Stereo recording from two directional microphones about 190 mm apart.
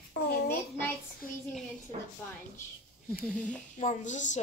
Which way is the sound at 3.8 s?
40° left (ahead or behind).